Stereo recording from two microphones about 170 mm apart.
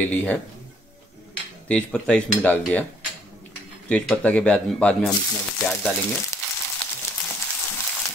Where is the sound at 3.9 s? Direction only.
5° left (ahead or behind).